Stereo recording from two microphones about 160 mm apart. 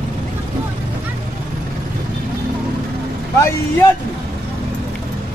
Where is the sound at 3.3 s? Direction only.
15° left (ahead or behind).